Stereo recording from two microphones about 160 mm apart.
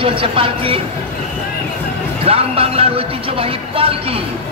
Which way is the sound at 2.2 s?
35° right (ahead or behind).